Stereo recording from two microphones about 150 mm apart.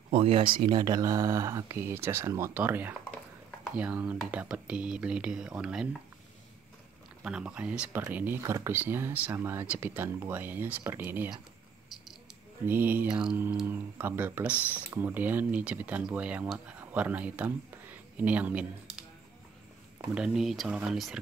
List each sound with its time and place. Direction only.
0.1 s speech: 35° right (ahead or behind); by 5.9 s 5° right (ahead or behind)
7.2 s speech: 5° right (ahead or behind)
12.6 s speech: 10° right (ahead or behind)
20.2 s speech: 5° right (ahead or behind)